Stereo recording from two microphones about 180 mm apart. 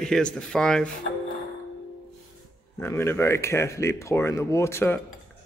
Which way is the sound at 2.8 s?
15° left (ahead or behind).